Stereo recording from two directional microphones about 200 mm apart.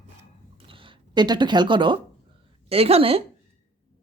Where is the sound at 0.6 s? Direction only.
25° right (ahead or behind).